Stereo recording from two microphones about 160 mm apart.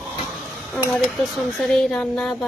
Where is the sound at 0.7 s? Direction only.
5° left (ahead or behind).